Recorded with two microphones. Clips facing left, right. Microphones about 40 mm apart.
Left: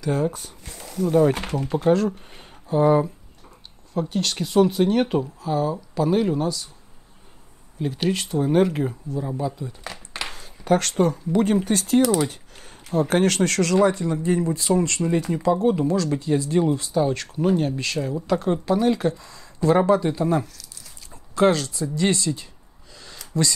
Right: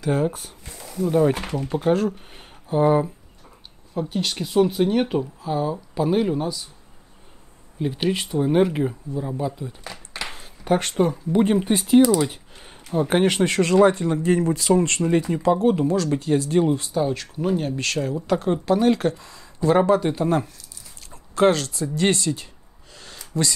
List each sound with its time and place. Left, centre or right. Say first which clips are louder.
0.3 s speech: even; right
0.8 s speech: left 1 dB; centre
1.8 s speech: left 1 dB; centre
3.9 s speech: left 1 dB; centre
7.8 s speech: right 1 dB; centre
12.3 s typing: right 1 dB; right
13.1 s speech: right 2 dB; right
14.2 s speech: right 2 dB; right
14.7 s speech: right 2 dB; right
16.9 s speech: left 1 dB; centre
17.7 s speech: right 1 dB; right
18.2 s speech: left 1 dB; right
19.9 s speech: even; right